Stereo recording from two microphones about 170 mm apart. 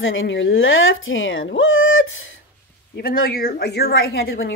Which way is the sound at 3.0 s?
60° left (ahead or behind).